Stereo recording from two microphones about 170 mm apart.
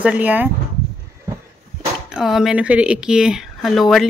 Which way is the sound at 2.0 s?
5° right (ahead or behind).